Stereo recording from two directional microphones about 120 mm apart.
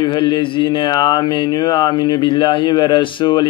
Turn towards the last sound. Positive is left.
turn(degrees=40)  # may be behind; listen again after turning